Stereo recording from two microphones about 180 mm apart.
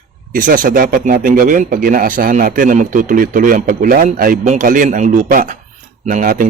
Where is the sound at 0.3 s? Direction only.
50° right (ahead or behind).